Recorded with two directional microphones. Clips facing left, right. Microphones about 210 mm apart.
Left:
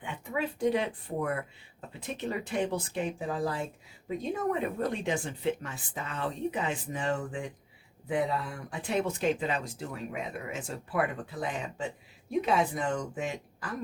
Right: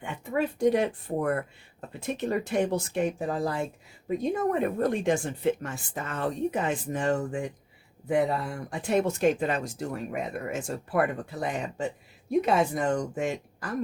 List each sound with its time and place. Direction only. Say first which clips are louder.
0.0 s speech: right 5 dB; 45° right (ahead or behind)